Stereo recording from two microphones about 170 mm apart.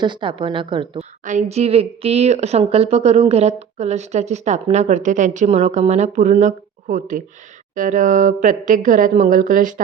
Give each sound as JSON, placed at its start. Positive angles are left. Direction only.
{"t": 0.0, "sound": "speech", "side_deg": -30}
{"t": 1.2, "sound": "speech", "side_deg": -45}